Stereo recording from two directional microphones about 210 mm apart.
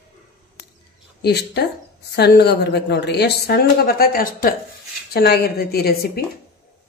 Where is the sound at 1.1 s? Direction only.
50° left (ahead or behind).